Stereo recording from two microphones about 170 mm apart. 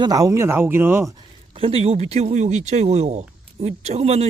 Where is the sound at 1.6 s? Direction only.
35° right (ahead or behind).